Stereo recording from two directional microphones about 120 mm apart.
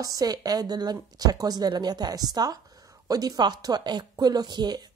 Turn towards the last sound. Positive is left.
turn(degrees=-35)  # may be behind; listen again after turning